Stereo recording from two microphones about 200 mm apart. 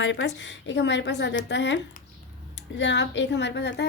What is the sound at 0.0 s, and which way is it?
A woman's voice, 65° left (ahead or behind).